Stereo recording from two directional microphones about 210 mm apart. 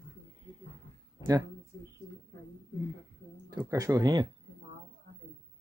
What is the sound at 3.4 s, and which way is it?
Speech, 15° right (ahead or behind).